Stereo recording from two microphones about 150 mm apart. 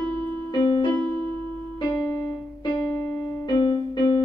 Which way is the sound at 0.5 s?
30° left (ahead or behind).